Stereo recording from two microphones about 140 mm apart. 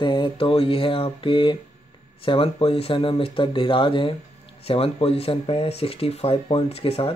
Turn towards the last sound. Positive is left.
turn(degrees=45)  # may be behind; listen again after turning